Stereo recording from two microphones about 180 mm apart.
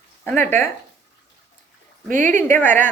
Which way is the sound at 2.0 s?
45° right (ahead or behind).